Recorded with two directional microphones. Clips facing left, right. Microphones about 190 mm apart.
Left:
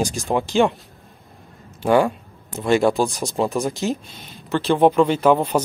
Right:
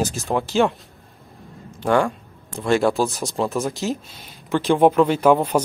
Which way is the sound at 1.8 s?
5° left (ahead or behind).